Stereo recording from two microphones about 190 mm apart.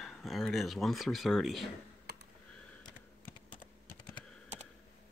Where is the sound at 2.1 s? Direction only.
60° right (ahead or behind).